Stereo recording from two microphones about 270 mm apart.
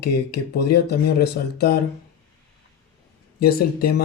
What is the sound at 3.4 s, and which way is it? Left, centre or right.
Speech, left.